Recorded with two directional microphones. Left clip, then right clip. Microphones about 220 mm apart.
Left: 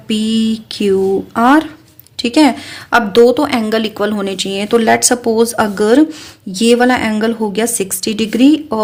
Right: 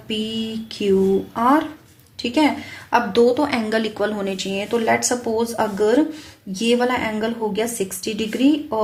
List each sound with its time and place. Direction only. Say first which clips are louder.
0.1 s a woman's voice: left 9 dB; 50° left (ahead or behind)